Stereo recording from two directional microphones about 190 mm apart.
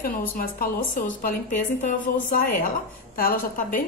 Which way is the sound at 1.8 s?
45° left (ahead or behind).